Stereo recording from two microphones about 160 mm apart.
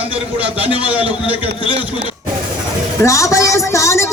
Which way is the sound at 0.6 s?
30° left (ahead or behind).